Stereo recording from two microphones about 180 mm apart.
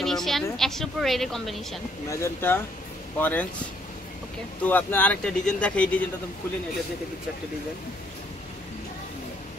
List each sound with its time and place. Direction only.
0.0 s a woman's voice: centre (ahead or behind)
2.0 s speech: 15° left (ahead or behind)
4.6 s speech: 10° left (ahead or behind)